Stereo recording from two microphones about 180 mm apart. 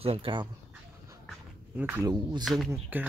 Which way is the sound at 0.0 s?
30° right (ahead or behind).